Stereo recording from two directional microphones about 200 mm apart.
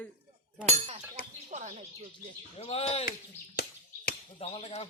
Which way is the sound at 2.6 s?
30° left (ahead or behind).